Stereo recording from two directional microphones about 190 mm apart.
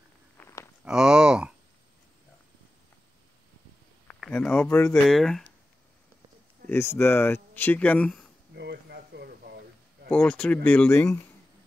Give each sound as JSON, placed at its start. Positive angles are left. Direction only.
{"t": 0.4, "sound": "walk", "side_deg": 15}
{"t": 0.8, "sound": "speech", "side_deg": -5}
{"t": 4.1, "sound": "speech", "side_deg": 5}
{"t": 5.0, "sound": "speech", "side_deg": 0}
{"t": 6.7, "sound": "speech", "side_deg": 10}
{"t": 8.5, "sound": "a sound", "side_deg": -60}
{"t": 10.0, "sound": "speech", "side_deg": 5}